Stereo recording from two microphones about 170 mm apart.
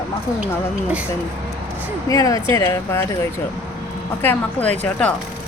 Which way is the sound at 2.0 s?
20° left (ahead or behind).